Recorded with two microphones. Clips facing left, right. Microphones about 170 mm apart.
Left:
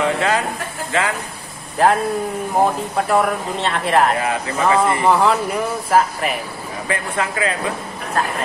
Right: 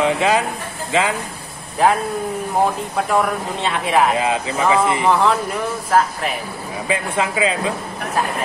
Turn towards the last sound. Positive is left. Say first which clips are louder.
# right 2 dB
turn(degrees=-15)  # may be behind; listen again after turning